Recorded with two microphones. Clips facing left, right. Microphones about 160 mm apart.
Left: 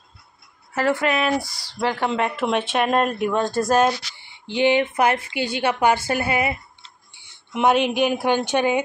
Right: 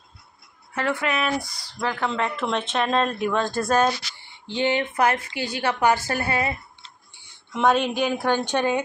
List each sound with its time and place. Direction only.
0.8 s speech: centre (ahead or behind)
1.9 s speech: 20° left (ahead or behind)
4.6 s a woman's voice: 15° left (ahead or behind)